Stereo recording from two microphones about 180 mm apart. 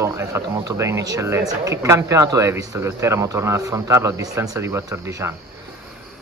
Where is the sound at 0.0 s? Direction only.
15° right (ahead or behind).